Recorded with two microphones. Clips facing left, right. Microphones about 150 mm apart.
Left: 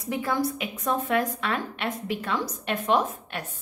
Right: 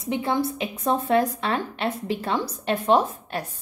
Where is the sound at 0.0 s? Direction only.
25° right (ahead or behind).